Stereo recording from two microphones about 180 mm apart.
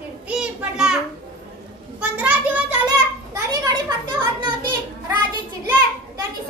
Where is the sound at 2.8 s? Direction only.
20° right (ahead or behind).